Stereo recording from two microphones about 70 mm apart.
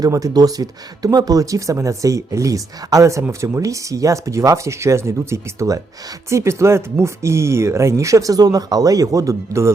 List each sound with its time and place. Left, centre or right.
0.0 s speech: right